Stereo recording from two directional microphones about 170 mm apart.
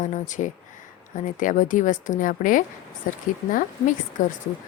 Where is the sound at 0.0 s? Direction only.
45° left (ahead or behind).